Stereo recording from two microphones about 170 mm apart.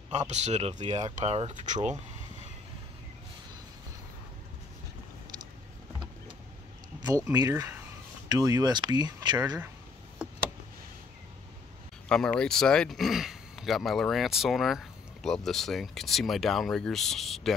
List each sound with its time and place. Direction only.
0.1 s speech: 40° right (ahead or behind)
7.2 s speech: 20° right (ahead or behind)
12.1 s speech: 5° left (ahead or behind)